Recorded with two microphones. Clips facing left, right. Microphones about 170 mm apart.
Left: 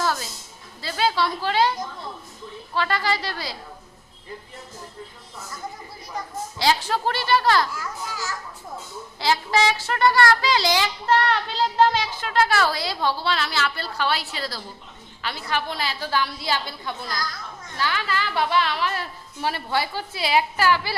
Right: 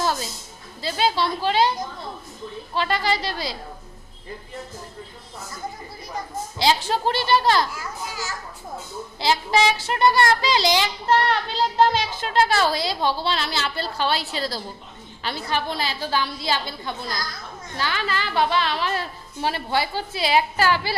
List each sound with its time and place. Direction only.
0.0 s a sound: 20° right (ahead or behind)
0.8 s a child's voice: 20° right (ahead or behind)
6.6 s a child's voice: 20° right (ahead or behind)
9.1 s a child's voice: 20° right (ahead or behind)